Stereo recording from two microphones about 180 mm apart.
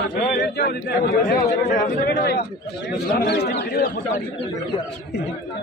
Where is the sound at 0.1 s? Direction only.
65° left (ahead or behind).